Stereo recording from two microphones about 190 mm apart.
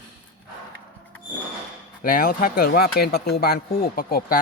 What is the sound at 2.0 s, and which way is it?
Speech, 50° left (ahead or behind).